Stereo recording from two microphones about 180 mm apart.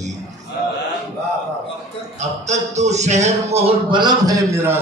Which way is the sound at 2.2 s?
40° right (ahead or behind).